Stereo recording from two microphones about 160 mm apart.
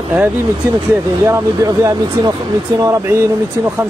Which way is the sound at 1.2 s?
20° right (ahead or behind).